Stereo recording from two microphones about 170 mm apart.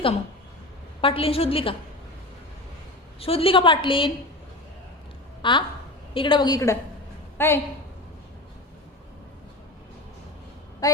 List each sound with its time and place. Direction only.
1.0 s a woman's voice: 35° left (ahead or behind)
3.2 s a woman's voice: 35° left (ahead or behind)
5.4 s a woman's voice: 30° left (ahead or behind)
10.8 s a woman's voice: 20° left (ahead or behind)